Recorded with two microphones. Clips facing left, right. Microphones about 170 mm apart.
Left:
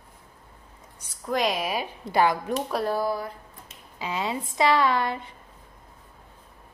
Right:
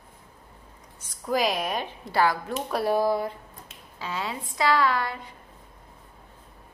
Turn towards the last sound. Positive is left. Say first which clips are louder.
# left 1 dB
turn(degrees=25)  # may be behind; listen again after turning